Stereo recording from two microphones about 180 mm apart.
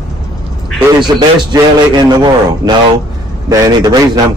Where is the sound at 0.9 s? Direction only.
25° right (ahead or behind).